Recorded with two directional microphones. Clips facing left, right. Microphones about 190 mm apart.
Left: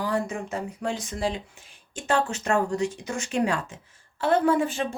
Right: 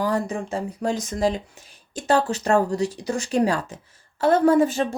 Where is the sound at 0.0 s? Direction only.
40° right (ahead or behind).